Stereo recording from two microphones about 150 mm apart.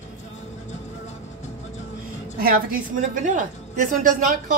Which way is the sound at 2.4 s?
70° right (ahead or behind).